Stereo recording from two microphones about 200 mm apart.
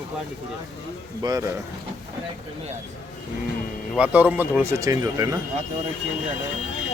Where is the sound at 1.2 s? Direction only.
20° right (ahead or behind).